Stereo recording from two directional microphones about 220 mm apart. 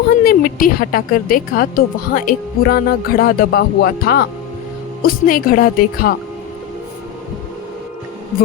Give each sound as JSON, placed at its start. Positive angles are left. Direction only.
{"t": 0.3, "sound": "speech", "side_deg": 40}